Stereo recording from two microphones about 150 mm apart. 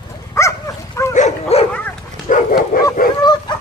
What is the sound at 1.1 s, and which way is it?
Dog, 45° left (ahead or behind).